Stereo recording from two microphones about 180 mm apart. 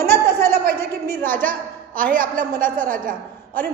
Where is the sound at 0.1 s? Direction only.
15° left (ahead or behind).